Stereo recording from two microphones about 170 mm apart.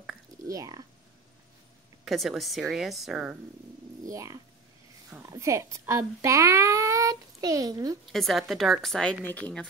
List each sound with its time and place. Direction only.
0.5 s speech: 20° right (ahead or behind)
2.0 s speech: centre (ahead or behind)
4.1 s a woman's voice: 20° right (ahead or behind)
8.1 s speech: centre (ahead or behind)